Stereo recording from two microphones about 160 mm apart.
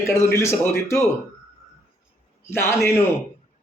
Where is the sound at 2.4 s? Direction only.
15° left (ahead or behind).